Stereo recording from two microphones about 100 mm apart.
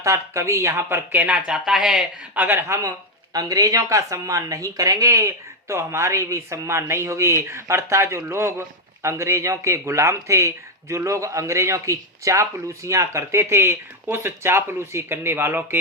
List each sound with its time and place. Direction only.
0.0 s speech: 30° right (ahead or behind)